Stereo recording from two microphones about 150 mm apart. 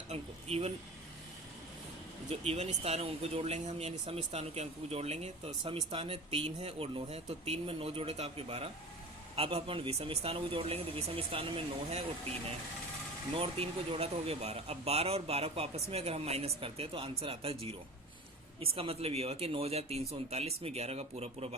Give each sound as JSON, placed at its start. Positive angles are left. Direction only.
{"t": 0.1, "sound": "speech", "side_deg": -45}
{"t": 2.3, "sound": "speech", "side_deg": -45}
{"t": 13.3, "sound": "speech", "side_deg": -40}